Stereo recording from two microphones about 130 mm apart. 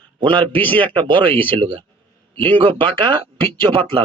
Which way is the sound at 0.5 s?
15° left (ahead or behind).